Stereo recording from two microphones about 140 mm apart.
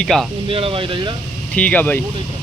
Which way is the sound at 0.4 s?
40° right (ahead or behind).